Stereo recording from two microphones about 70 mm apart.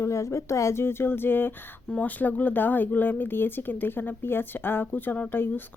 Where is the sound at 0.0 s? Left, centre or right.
Left.